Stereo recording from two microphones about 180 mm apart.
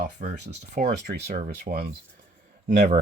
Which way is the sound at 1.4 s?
50° right (ahead or behind).